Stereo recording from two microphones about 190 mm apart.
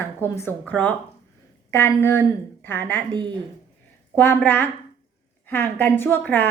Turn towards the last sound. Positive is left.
turn(degrees=10)  # may be behind; listen again after turning